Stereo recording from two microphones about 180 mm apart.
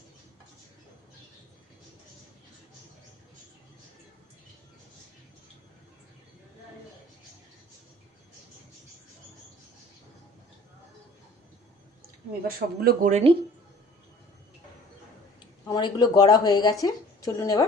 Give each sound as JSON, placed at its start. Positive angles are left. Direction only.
{"t": 12.5, "sound": "a man's voice", "side_deg": -55}
{"t": 13.1, "sound": "speech", "side_deg": -35}
{"t": 15.6, "sound": "a woman's voice", "side_deg": 20}